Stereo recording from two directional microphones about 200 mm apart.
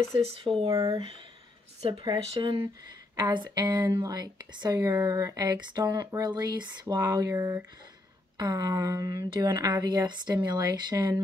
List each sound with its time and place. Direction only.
0.2 s speech: 30° right (ahead or behind)